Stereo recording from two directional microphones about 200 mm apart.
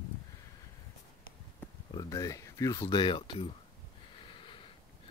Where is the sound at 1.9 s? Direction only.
15° left (ahead or behind).